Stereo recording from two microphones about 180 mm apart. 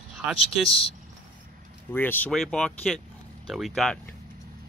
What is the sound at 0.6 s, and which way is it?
Speech, 30° left (ahead or behind).